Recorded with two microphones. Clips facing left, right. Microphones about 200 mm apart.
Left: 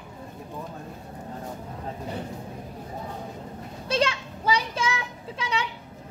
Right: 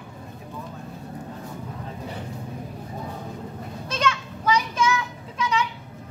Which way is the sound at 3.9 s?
30° left (ahead or behind).